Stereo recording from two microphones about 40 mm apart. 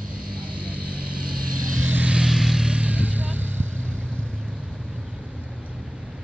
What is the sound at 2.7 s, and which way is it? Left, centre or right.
Vehicle, right.